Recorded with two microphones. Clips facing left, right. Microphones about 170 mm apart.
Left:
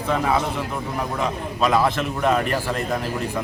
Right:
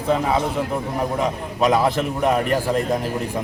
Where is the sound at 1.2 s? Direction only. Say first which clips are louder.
Right 1 dB; 15° right (ahead or behind).